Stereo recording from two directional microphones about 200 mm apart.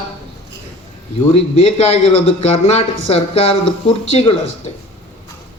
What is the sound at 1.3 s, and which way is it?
A man's voice, 30° left (ahead or behind).